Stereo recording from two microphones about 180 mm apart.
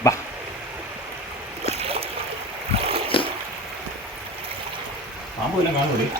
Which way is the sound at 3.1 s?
30° left (ahead or behind).